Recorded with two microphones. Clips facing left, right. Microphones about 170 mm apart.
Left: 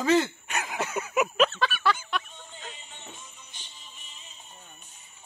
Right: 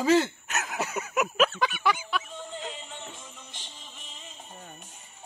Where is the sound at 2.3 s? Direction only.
90° right.